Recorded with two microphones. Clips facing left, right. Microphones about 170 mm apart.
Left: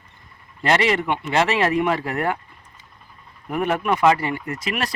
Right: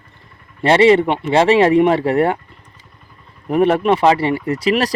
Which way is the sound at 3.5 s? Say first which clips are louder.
Right 8 dB; 30° right (ahead or behind).